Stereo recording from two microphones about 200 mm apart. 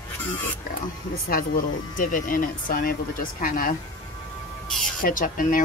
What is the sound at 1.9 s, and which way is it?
Speech, 45° left (ahead or behind).